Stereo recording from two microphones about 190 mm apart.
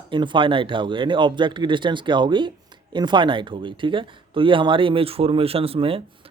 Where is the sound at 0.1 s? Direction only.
25° right (ahead or behind).